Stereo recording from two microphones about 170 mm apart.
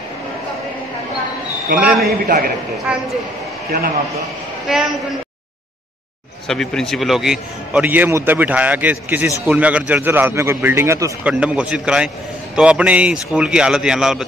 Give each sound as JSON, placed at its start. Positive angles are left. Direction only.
{"t": 1.8, "sound": "a man's voice", "side_deg": -5}
{"t": 2.2, "sound": "a man's voice", "side_deg": -60}
{"t": 2.9, "sound": "a man's voice", "side_deg": -5}
{"t": 4.6, "sound": "a man's voice", "side_deg": 0}
{"t": 6.4, "sound": "a man's voice", "side_deg": 0}